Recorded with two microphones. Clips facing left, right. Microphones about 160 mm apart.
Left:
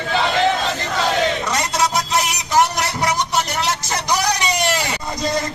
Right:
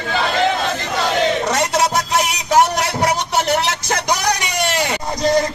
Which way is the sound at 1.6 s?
60° right (ahead or behind).